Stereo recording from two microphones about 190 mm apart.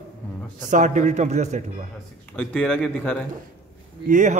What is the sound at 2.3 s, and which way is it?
Speech, 5° left (ahead or behind).